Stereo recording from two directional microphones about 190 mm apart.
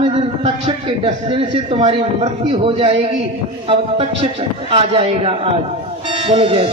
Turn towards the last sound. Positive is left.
turn(degrees=-30)  # may be behind; listen again after turning